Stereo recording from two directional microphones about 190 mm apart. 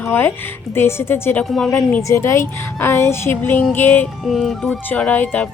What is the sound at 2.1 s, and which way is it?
A woman's voice, 15° left (ahead or behind).